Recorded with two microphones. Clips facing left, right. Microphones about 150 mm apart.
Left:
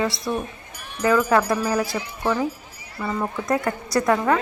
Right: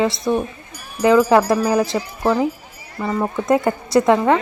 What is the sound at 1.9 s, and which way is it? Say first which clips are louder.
Speech: right 5 dB; 40° right (ahead or behind).